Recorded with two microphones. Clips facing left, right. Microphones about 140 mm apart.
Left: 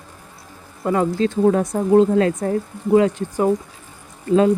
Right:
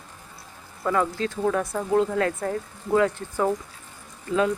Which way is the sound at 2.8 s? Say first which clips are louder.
Left 6 dB; 15° left (ahead or behind).